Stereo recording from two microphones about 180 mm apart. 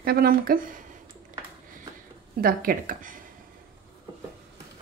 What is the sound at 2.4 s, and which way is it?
Speech, 50° right (ahead or behind).